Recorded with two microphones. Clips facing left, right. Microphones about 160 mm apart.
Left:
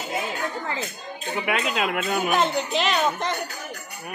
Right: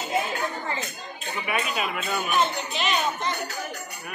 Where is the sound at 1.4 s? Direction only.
70° left (ahead or behind); by 3.3 s 90° left.